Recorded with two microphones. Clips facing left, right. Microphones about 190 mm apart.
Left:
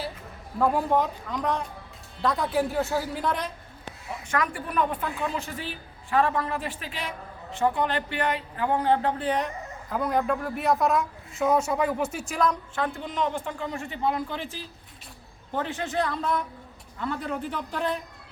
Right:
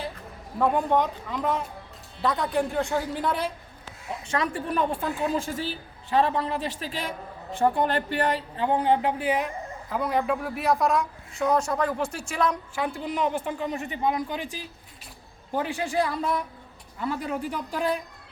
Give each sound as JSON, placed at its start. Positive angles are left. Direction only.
{"t": 0.6, "sound": "speech", "side_deg": 0}
{"t": 4.3, "sound": "a woman's voice", "side_deg": -25}
{"t": 7.5, "sound": "a woman's voice", "side_deg": -50}
{"t": 12.3, "sound": "a woman's voice", "side_deg": -5}